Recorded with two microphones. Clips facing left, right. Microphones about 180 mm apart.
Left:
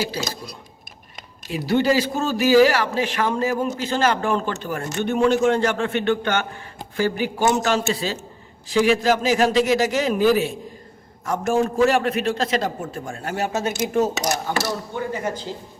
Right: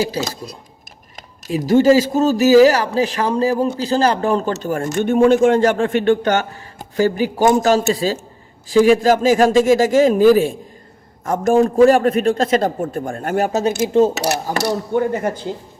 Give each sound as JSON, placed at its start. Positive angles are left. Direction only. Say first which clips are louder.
{"t": 1.5, "sound": "a man's voice", "louder": "right 7 dB", "side_deg": -40}
{"t": 11.6, "sound": "a man's voice", "louder": "right 8 dB", "side_deg": -35}
{"t": 13.5, "sound": "speech", "louder": "right 6 dB", "side_deg": -35}
{"t": 13.8, "sound": "speech", "louder": "right 7 dB", "side_deg": -25}
{"t": 14.7, "sound": "speech", "louder": "right 8 dB", "side_deg": -50}